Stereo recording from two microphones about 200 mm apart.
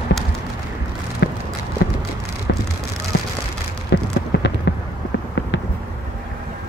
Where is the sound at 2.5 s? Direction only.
60° left (ahead or behind).